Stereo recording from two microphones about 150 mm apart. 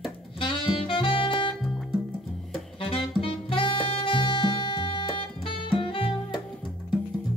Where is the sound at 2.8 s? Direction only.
35° left (ahead or behind).